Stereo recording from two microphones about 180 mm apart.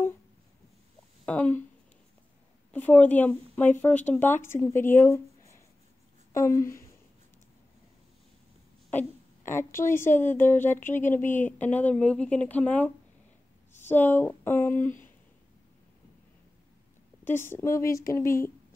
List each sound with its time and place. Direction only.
1.2 s speech: 5° left (ahead or behind)
2.7 s speech: 10° left (ahead or behind)
9.6 s speech: 15° left (ahead or behind)
13.7 s a sound: 10° left (ahead or behind)
17.2 s speech: 10° left (ahead or behind)